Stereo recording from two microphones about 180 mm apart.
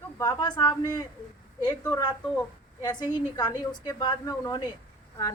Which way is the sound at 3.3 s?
20° left (ahead or behind).